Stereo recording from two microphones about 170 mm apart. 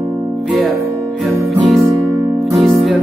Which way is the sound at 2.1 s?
15° right (ahead or behind).